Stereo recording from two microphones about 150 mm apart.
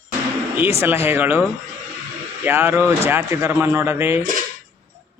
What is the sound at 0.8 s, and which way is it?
Speech, 15° right (ahead or behind).